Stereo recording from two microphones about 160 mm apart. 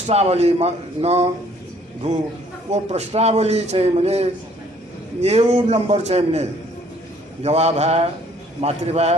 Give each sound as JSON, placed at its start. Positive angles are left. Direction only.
{"t": 0.0, "sound": "a man's voice", "side_deg": -40}
{"t": 2.7, "sound": "a man's voice", "side_deg": -40}
{"t": 7.4, "sound": "a man's voice", "side_deg": -40}